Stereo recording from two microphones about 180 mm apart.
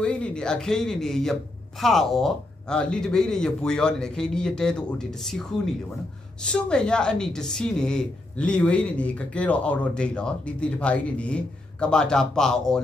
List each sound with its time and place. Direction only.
0.0 s speech: 5° left (ahead or behind)